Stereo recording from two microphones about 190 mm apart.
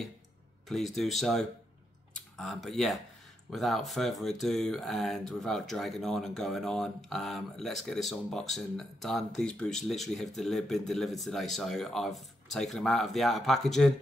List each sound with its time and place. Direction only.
0.7 s speech: centre (ahead or behind)